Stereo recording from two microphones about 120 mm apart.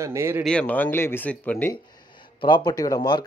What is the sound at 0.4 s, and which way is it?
Speech, 10° left (ahead or behind).